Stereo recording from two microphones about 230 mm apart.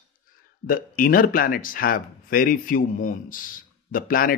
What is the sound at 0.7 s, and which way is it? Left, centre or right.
Speech, left.